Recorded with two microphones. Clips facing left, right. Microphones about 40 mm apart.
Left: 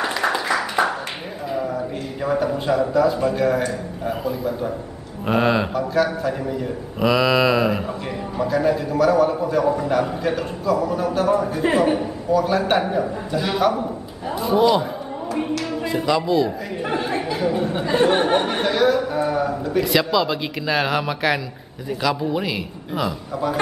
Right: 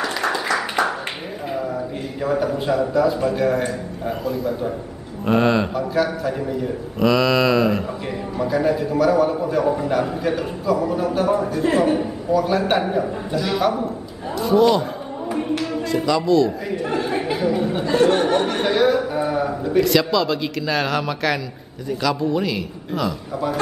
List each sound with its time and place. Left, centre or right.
0.0 s a sound: centre
0.5 s a sound: centre
2.2 s a man's voice: centre
8.4 s a man's voice: centre
11.7 s a man's voice: centre
12.0 s a man's voice: centre
14.4 s a man's voice: centre
16.0 s a man's voice: centre
17.6 s a man's voice: centre
17.9 s speech: left
18.6 s a man's voice: centre
19.8 s a man's voice: centre